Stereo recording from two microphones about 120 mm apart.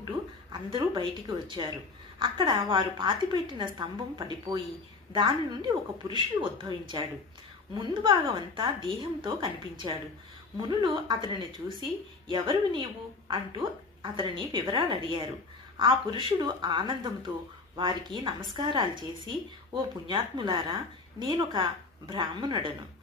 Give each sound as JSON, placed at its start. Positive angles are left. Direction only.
{"t": 0.5, "sound": "a woman's voice", "side_deg": -45}